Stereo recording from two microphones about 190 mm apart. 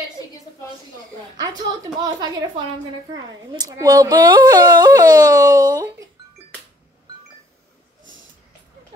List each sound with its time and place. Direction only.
1.6 s speech: 20° right (ahead or behind)